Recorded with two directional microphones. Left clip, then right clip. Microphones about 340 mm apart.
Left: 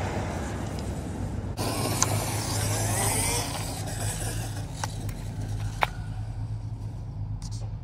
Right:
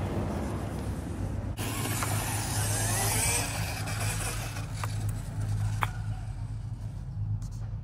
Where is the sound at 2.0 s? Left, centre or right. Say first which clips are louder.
Left 3 dB; right.